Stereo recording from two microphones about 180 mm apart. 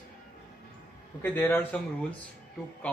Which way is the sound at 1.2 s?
10° left (ahead or behind).